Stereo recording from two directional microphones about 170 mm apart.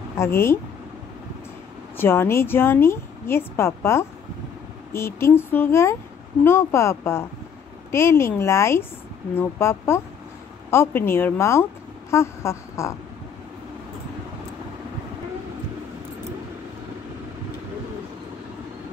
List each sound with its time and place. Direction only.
0.2 s speech: 15° left (ahead or behind)
2.0 s speech: 15° left (ahead or behind)